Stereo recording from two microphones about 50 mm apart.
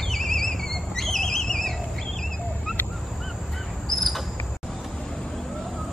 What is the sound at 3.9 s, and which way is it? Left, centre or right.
Cricket, centre.